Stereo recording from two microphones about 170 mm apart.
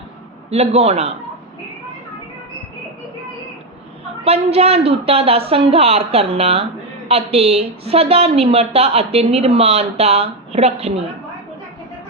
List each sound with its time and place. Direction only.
0.5 s a woman's voice: 40° right (ahead or behind)
4.2 s a woman's voice: 35° right (ahead or behind)